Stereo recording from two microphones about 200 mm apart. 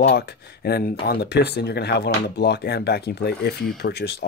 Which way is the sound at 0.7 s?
50° left (ahead or behind).